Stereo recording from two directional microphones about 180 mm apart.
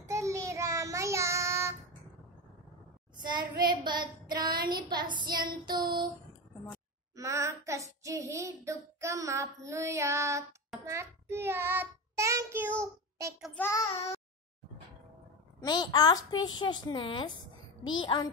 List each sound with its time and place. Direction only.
0.0 s child singing: 15° right (ahead or behind)
3.2 s child singing: 25° right (ahead or behind)
7.2 s child singing: 15° right (ahead or behind)
13.6 s child singing: 15° left (ahead or behind)
15.6 s a woman's voice: 25° left (ahead or behind)